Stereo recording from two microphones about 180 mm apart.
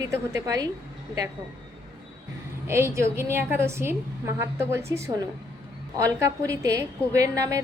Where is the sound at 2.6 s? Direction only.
15° right (ahead or behind).